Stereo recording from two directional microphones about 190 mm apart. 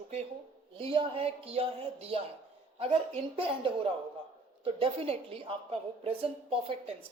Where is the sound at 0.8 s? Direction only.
30° right (ahead or behind).